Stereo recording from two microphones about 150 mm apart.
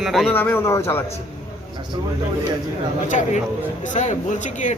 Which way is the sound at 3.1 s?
55° left (ahead or behind).